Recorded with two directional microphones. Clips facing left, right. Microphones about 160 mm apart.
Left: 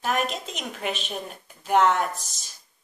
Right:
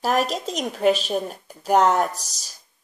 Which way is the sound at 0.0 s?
35° right (ahead or behind).